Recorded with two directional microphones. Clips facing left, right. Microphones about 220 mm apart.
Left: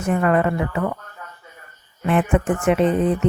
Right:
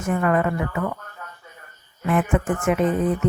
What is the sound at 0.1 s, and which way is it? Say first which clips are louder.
Speech: left 2 dB; 25° left (ahead or behind).